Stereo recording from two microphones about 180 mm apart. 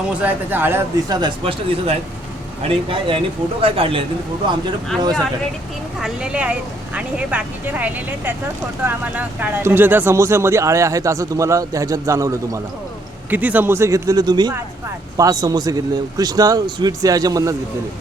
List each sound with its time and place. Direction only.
0.1 s speech: 10° right (ahead or behind)
1.2 s a man's voice: 30° right (ahead or behind)
6.0 s a man's voice: 5° right (ahead or behind)